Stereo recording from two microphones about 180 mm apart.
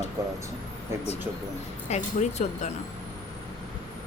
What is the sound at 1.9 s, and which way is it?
Speech, 40° left (ahead or behind).